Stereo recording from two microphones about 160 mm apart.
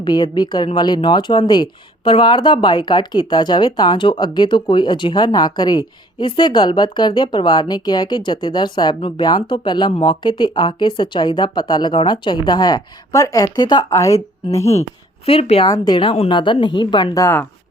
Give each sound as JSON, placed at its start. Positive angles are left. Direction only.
{"t": 0.0, "sound": "a woman's voice", "side_deg": 25}
{"t": 15.3, "sound": "a woman's voice", "side_deg": 40}
{"t": 15.7, "sound": "a woman's voice", "side_deg": 25}